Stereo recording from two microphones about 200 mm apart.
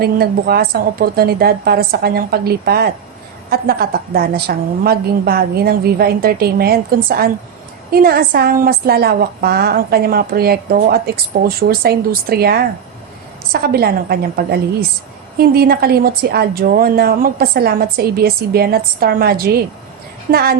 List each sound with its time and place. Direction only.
0.0 s a woman's voice: 50° right (ahead or behind)